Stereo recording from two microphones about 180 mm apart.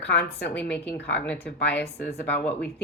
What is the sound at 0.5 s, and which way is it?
Speech, 10° left (ahead or behind).